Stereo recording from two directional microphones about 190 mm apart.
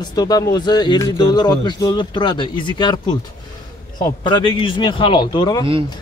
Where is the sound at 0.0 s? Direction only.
20° left (ahead or behind).